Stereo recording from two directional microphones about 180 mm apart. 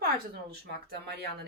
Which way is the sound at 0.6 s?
60° right (ahead or behind).